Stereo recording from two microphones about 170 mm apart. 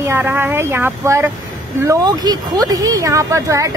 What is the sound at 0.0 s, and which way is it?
A woman's voice, 15° right (ahead or behind).